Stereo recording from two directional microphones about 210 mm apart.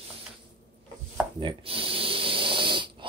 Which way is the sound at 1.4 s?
25° right (ahead or behind).